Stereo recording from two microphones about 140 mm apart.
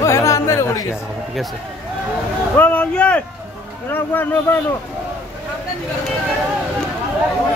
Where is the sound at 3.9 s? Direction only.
15° left (ahead or behind).